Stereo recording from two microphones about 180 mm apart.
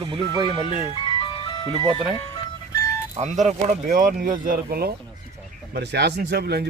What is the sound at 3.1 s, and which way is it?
Speech, 40° right (ahead or behind).